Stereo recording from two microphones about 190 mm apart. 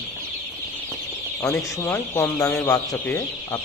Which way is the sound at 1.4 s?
10° left (ahead or behind).